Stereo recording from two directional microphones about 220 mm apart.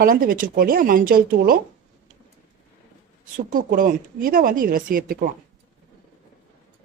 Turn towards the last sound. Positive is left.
turn(degrees=-40)  # may be behind; listen again after turning